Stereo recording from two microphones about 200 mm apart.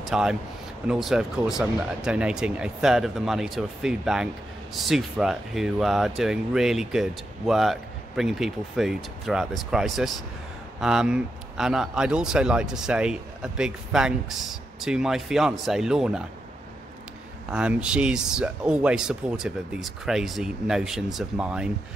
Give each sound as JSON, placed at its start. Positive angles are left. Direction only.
{"t": 0.0, "sound": "speech", "side_deg": -5}
{"t": 17.5, "sound": "speech", "side_deg": -5}